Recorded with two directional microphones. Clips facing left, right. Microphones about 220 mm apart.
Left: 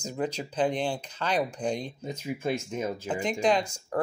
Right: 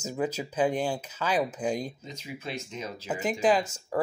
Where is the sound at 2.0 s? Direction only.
50° left (ahead or behind).